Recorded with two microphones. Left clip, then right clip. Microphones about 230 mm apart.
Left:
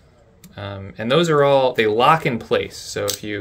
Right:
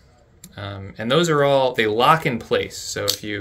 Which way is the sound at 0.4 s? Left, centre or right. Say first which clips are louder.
Left 2 dB; centre.